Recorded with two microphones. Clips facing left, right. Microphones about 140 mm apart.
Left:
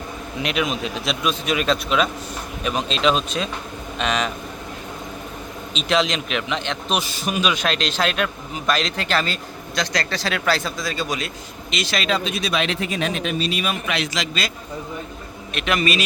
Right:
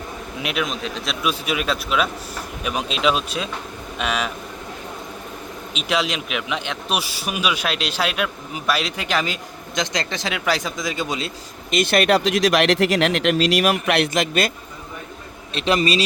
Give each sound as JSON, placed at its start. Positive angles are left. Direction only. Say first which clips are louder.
{"t": 0.3, "sound": "a man's voice", "louder": "left 2 dB", "side_deg": 0}
{"t": 5.7, "sound": "a man's voice", "louder": "left 2 dB", "side_deg": -10}
{"t": 11.7, "sound": "speech", "louder": "right 6 dB", "side_deg": -55}
{"t": 15.5, "sound": "a man's voice", "louder": "right 2 dB", "side_deg": -30}